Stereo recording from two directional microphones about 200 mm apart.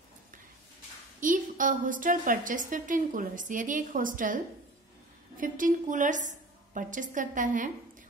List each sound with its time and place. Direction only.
1.2 s a woman's voice: 40° right (ahead or behind)
5.4 s a woman's voice: 40° right (ahead or behind)